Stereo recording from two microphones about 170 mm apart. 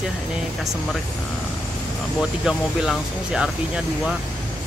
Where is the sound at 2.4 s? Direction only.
5° right (ahead or behind).